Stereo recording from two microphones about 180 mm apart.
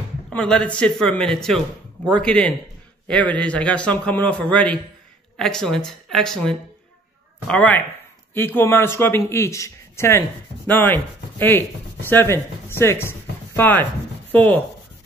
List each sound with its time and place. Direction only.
0.3 s speech: 5° left (ahead or behind)